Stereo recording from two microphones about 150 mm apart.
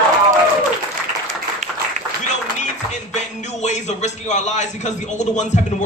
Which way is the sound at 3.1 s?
50° left (ahead or behind).